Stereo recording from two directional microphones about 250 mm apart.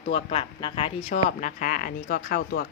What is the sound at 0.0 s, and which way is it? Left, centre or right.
A woman's voice, left.